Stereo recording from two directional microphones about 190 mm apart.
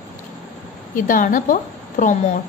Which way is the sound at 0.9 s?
45° left (ahead or behind).